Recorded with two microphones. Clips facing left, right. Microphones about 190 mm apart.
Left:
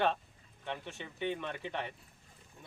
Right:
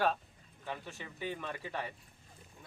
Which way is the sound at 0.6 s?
5° right (ahead or behind).